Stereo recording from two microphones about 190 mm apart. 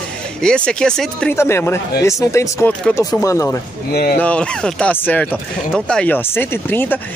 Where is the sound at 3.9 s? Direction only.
50° left (ahead or behind).